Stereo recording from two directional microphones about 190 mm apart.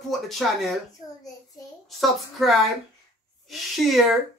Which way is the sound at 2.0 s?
Centre (ahead or behind).